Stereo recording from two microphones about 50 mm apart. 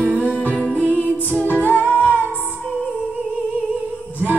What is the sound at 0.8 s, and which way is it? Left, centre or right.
Music, left.